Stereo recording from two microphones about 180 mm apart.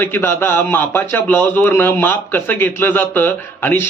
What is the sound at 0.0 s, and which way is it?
A man's voice, 10° left (ahead or behind).